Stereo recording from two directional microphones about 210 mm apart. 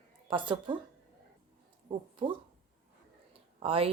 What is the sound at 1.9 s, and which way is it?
Speech, 25° right (ahead or behind).